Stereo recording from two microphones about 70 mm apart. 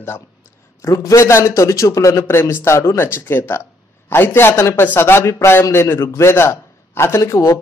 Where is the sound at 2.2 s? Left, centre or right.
Left.